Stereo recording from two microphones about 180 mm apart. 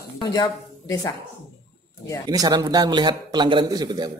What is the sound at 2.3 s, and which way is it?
A man's voice, 20° right (ahead or behind).